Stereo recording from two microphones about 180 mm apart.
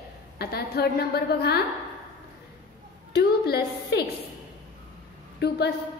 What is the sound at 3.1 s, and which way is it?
Speech, 65° left (ahead or behind).